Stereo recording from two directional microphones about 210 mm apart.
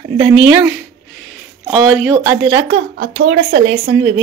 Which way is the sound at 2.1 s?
15° right (ahead or behind).